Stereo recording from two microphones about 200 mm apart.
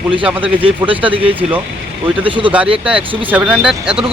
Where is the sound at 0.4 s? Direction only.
25° right (ahead or behind).